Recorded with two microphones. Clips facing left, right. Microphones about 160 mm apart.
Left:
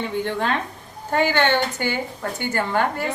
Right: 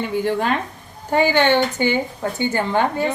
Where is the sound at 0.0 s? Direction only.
5° right (ahead or behind).